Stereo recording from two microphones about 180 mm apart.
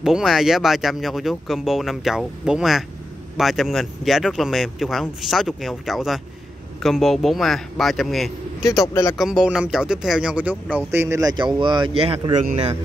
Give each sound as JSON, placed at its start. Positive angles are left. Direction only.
{"t": 0.0, "sound": "speech", "side_deg": -5}
{"t": 8.8, "sound": "speech", "side_deg": 25}
{"t": 9.1, "sound": "speech", "side_deg": 0}